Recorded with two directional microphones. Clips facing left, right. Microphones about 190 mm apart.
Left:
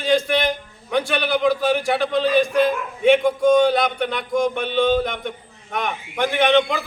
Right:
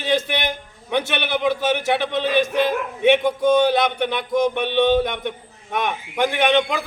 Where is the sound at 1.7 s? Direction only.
20° right (ahead or behind).